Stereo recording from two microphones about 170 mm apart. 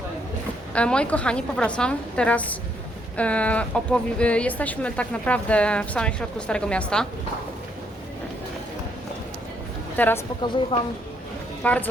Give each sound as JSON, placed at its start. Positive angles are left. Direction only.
{"t": 0.7, "sound": "speech", "side_deg": 5}
{"t": 10.0, "sound": "speech", "side_deg": 10}
{"t": 10.7, "sound": "a woman's voice", "side_deg": 30}
{"t": 11.6, "sound": "speech", "side_deg": 10}